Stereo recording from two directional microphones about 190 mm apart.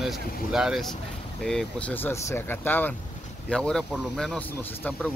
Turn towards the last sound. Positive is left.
turn(degrees=10)  # may be behind; listen again after turning